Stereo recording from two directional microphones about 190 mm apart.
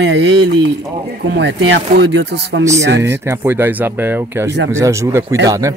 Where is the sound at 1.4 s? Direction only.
65° right (ahead or behind).